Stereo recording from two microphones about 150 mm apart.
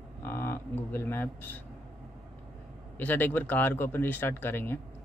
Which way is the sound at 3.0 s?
10° left (ahead or behind).